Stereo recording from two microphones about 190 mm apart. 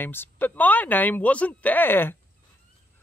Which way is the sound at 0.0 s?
10° left (ahead or behind).